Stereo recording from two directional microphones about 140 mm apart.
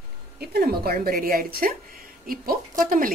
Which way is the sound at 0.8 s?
90° right.